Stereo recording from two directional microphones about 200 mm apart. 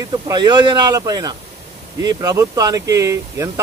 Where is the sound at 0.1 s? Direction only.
20° right (ahead or behind).